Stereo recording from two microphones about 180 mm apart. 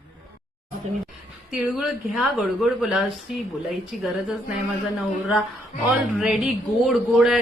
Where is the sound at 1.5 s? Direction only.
Centre (ahead or behind).